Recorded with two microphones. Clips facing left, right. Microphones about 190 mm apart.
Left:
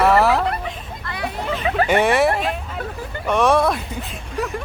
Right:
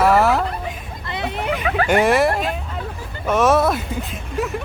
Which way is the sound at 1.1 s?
25° right (ahead or behind).